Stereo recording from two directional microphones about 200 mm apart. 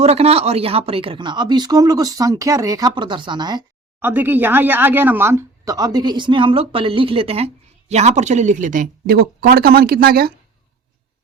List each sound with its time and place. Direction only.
0.0 s speech: 30° right (ahead or behind)
4.0 s speech: 10° right (ahead or behind); by 10.3 s 50° right (ahead or behind)